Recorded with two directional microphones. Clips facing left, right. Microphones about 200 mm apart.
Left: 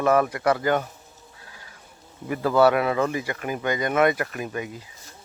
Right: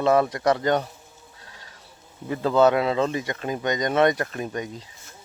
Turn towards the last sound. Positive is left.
turn(degrees=-30)  # may be behind; listen again after turning